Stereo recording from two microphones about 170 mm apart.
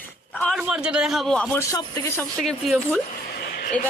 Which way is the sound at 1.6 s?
20° left (ahead or behind).